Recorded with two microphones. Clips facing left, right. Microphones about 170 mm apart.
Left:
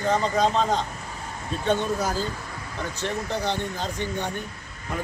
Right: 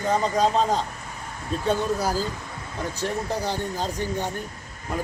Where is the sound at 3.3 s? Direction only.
10° right (ahead or behind).